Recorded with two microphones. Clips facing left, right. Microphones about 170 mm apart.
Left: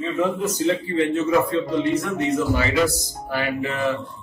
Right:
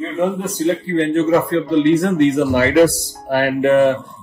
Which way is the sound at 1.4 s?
70° right (ahead or behind).